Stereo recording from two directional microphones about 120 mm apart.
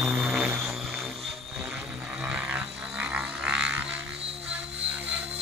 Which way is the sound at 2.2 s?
10° right (ahead or behind).